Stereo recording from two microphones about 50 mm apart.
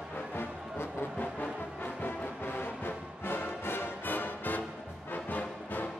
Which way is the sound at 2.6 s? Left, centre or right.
Left.